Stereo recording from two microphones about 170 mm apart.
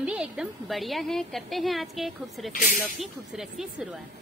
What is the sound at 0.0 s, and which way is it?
A woman's voice, 5° right (ahead or behind).